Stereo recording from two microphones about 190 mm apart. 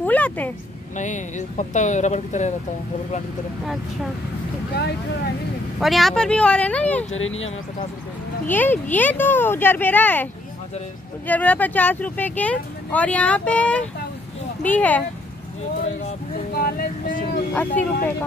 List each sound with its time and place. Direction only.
0.0 s a sound: 10° left (ahead or behind)
0.9 s speech: 40° left (ahead or behind)
5.8 s speech: centre (ahead or behind)
7.2 s speech: 90° left
8.5 s speech: 10° left (ahead or behind)
11.2 s speech: 10° left (ahead or behind)
16.5 s vehicle: 50° left (ahead or behind)
17.6 s speech: 10° left (ahead or behind)